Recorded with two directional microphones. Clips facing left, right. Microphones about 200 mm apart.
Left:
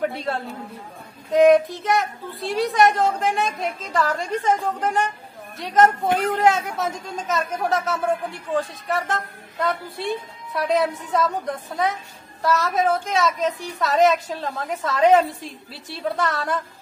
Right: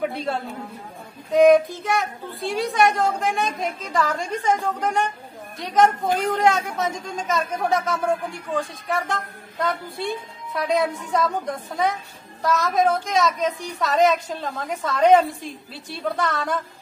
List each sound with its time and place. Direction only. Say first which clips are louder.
0.0 s a woman's voice: even; centre (ahead or behind)